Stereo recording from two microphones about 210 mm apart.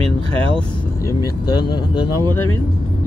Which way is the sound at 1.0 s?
15° left (ahead or behind).